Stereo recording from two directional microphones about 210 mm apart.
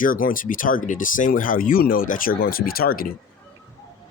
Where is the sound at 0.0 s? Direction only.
40° left (ahead or behind).